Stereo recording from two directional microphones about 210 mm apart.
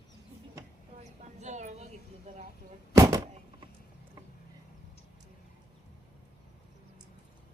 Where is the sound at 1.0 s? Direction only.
35° right (ahead or behind).